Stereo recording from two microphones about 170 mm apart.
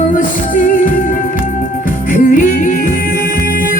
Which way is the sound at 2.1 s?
55° left (ahead or behind).